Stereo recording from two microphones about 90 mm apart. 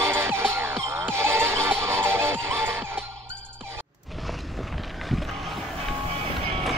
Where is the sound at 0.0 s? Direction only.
30° right (ahead or behind).